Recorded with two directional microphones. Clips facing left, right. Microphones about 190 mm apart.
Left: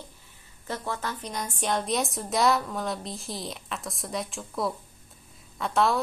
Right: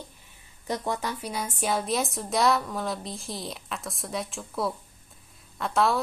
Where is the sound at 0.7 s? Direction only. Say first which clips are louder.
Right 3 dB; 15° right (ahead or behind).